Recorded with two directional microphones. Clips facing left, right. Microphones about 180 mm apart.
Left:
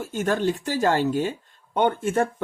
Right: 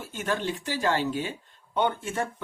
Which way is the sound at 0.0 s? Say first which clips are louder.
Left 6 dB; 45° left (ahead or behind).